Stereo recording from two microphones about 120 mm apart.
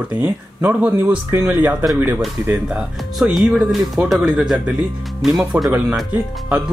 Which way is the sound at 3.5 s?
Centre (ahead or behind).